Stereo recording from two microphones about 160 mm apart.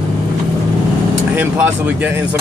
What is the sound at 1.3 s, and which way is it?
Speech, 10° right (ahead or behind).